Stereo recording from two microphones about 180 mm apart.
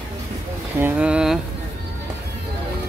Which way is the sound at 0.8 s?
5° right (ahead or behind).